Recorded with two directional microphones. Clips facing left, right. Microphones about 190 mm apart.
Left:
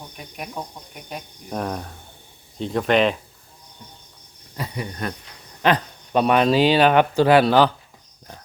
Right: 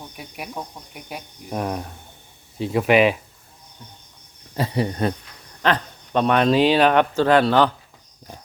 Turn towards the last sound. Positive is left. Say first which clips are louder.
# left 1 dB
turn(degrees=10)  # may be behind; listen again after turning